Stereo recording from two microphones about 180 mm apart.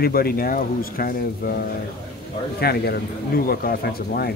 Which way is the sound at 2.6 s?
60° left (ahead or behind).